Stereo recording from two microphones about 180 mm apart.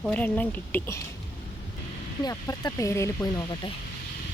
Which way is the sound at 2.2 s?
20° left (ahead or behind).